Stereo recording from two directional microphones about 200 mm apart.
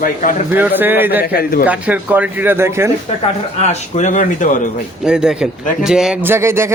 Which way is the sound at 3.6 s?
35° left (ahead or behind).